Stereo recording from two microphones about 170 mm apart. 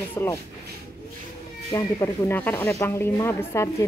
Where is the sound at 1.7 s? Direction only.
20° left (ahead or behind).